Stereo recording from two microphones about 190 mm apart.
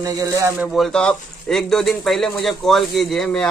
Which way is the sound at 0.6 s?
Centre (ahead or behind).